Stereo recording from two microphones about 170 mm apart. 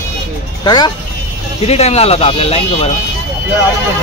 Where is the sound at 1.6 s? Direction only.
40° left (ahead or behind).